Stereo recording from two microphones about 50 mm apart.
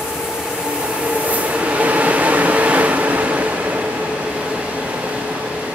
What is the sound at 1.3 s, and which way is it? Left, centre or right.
Train, right.